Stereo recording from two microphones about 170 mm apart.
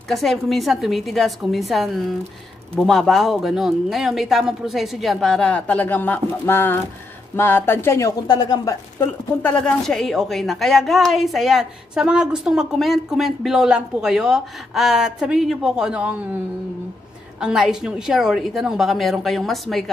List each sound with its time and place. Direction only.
0.1 s speech: centre (ahead or behind); by 8.7 s 25° left (ahead or behind)
9.0 s speech: 10° left (ahead or behind); by 16.2 s 5° right (ahead or behind)
17.4 s speech: 5° right (ahead or behind)